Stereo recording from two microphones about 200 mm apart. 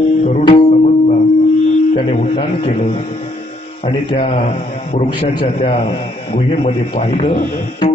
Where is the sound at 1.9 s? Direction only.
30° left (ahead or behind).